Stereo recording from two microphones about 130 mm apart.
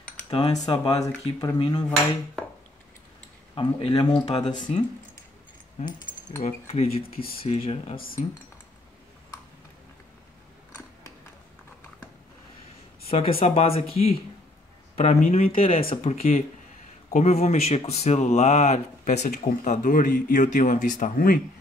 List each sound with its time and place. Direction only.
0.7 s speech: 30° left (ahead or behind)
3.5 s speech: 35° left (ahead or behind)
4.7 s speech: 55° left (ahead or behind)
5.8 s speech: 75° left (ahead or behind)
6.4 s speech: 55° left (ahead or behind)
8.0 s speech: 90° left
13.1 s speech: 50° left (ahead or behind)
17.1 s speech: 60° left (ahead or behind); by 21.4 s 85° left